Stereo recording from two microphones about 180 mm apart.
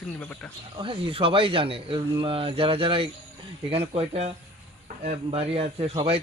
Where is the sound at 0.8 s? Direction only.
30° right (ahead or behind).